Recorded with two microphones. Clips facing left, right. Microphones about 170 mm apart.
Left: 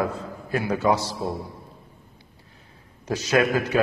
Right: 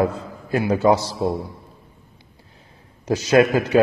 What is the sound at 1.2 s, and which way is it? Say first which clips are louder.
Speech: right 6 dB; 20° right (ahead or behind).